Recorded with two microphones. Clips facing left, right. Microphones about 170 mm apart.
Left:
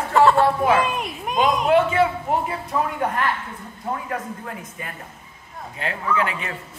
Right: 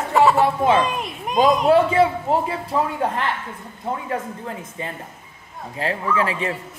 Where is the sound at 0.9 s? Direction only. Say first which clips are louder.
Right 1 dB; centre (ahead or behind).